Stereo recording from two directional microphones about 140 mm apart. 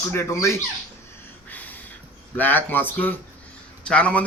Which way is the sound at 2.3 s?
15° left (ahead or behind).